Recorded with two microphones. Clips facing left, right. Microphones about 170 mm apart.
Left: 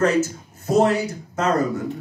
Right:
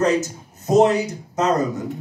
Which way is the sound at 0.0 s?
20° right (ahead or behind).